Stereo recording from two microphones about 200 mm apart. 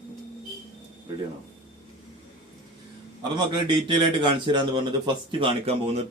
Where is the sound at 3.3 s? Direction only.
25° right (ahead or behind).